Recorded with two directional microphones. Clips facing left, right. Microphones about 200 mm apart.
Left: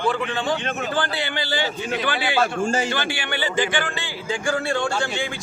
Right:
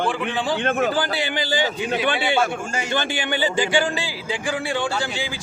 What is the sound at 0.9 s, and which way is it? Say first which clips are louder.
A man's voice: right 2 dB; 15° right (ahead or behind).